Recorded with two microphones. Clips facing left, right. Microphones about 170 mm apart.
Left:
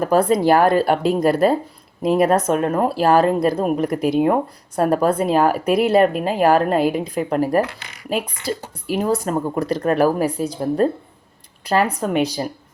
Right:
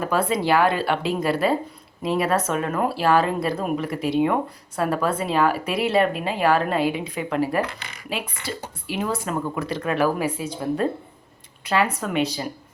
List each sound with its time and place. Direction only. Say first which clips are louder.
0.0 s speech: left 7 dB; 45° left (ahead or behind)